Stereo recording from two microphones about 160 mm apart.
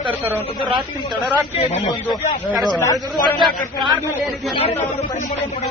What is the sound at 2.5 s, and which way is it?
Speech, centre (ahead or behind).